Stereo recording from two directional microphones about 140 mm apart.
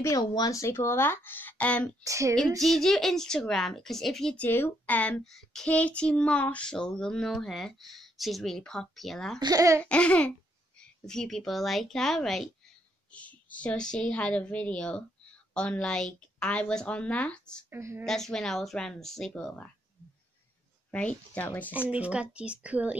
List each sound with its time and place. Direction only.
0.0 s a woman's voice: 25° left (ahead or behind); by 2.0 s 10° left (ahead or behind)
2.0 s speech: 20° right (ahead or behind)
2.6 s child singing: centre (ahead or behind)
4.5 s child singing: 15° left (ahead or behind)
9.4 s speech: 25° right (ahead or behind)
9.8 s a woman's voice: 10° left (ahead or behind)
11.1 s child singing: 5° left (ahead or behind)
13.1 s a woman's voice: 10° left (ahead or behind)
17.6 s a woman's voice: 20° right (ahead or behind)
18.0 s child singing: 5° left (ahead or behind)
20.9 s a woman's voice: 10° left (ahead or behind)
21.7 s a woman's voice: 10° right (ahead or behind)